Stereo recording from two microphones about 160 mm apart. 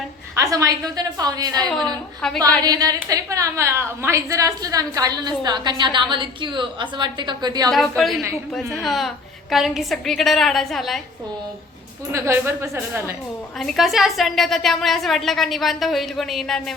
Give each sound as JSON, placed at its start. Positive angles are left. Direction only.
{"t": 0.3, "sound": "a woman's voice", "side_deg": -20}
{"t": 1.8, "sound": "a woman's voice", "side_deg": 5}
{"t": 2.6, "sound": "a woman's voice", "side_deg": -25}
{"t": 7.7, "sound": "a woman's voice", "side_deg": 0}
{"t": 12.1, "sound": "a woman's voice", "side_deg": -15}
{"t": 13.6, "sound": "a woman's voice", "side_deg": 0}